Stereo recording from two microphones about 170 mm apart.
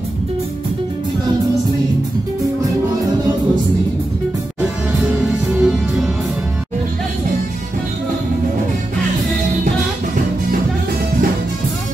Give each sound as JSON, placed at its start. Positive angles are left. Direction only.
{"t": 5.6, "sound": "music", "side_deg": -5}